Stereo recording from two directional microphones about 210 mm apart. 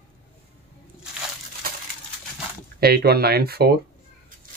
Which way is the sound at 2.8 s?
50° right (ahead or behind).